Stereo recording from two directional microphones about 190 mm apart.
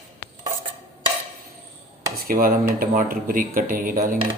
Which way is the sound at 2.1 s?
50° right (ahead or behind).